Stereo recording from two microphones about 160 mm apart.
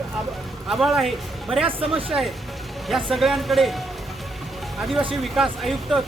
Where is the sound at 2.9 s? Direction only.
Centre (ahead or behind).